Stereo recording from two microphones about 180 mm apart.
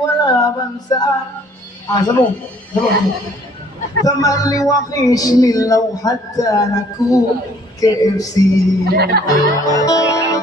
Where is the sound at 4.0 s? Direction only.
20° left (ahead or behind).